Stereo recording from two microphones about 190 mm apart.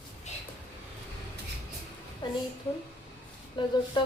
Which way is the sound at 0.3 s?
35° left (ahead or behind).